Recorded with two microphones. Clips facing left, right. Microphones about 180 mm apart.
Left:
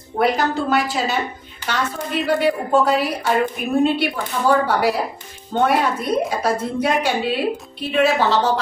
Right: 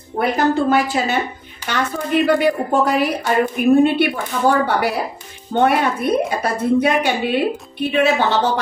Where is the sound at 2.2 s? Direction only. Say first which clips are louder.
Left 1 dB; 60° right (ahead or behind).